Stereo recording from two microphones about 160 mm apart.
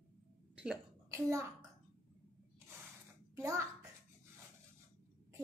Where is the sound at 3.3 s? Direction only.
20° right (ahead or behind).